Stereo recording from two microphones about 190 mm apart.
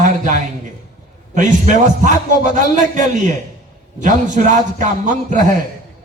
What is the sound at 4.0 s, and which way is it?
A man's voice, 40° right (ahead or behind).